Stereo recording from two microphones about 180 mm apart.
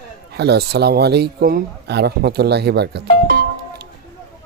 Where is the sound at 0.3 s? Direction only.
65° right (ahead or behind).